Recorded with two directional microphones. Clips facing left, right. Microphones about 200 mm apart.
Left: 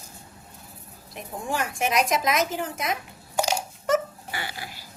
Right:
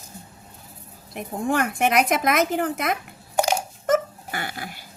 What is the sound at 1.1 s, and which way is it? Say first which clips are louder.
Speech: right 6 dB; 55° right (ahead or behind).